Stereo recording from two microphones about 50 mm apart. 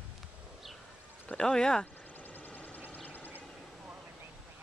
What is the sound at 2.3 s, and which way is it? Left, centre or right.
Vehicle, left.